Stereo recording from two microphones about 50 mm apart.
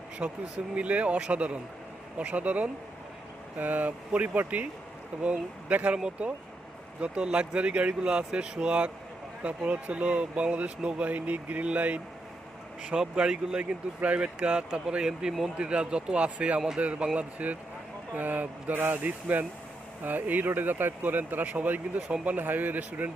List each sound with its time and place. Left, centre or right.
0.2 s speech: right
0.8 s speech: right; by 15.5 s centre
15.5 s speech: right
22.4 s speech: right